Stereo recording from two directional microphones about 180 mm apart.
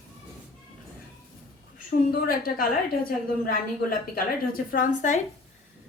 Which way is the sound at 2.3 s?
55° left (ahead or behind).